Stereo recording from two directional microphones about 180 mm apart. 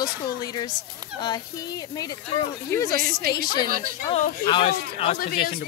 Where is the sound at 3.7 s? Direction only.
50° right (ahead or behind).